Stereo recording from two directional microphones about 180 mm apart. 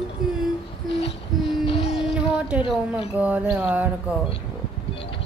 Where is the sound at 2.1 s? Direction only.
5° right (ahead or behind).